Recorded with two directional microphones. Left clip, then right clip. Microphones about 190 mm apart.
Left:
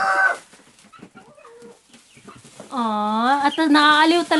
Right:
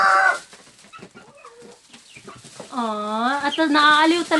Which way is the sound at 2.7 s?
60° left (ahead or behind).